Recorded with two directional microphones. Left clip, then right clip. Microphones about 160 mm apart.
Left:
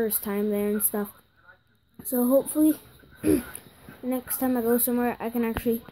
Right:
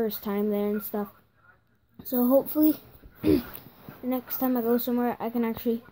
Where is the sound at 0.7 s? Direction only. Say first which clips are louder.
Left 2 dB; 15° left (ahead or behind).